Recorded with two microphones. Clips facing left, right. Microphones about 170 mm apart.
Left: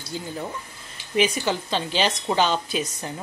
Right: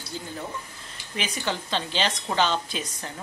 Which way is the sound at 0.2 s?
15° left (ahead or behind).